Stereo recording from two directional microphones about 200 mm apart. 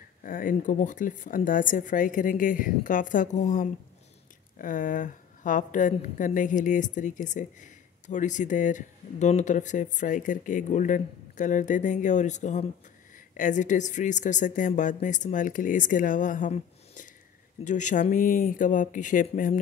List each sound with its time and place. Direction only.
0.2 s a woman's voice: 45° left (ahead or behind)